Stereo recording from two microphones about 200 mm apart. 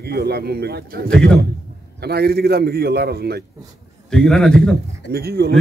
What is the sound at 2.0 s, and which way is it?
A man's voice, 55° right (ahead or behind).